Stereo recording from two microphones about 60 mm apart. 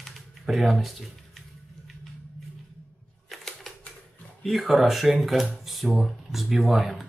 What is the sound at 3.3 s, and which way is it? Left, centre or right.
Typewriter, centre.